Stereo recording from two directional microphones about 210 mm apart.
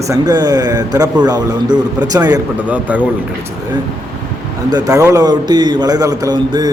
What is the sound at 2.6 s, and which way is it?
Speech, 5° right (ahead or behind).